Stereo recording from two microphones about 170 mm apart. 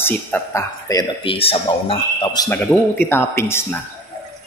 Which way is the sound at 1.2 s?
35° left (ahead or behind).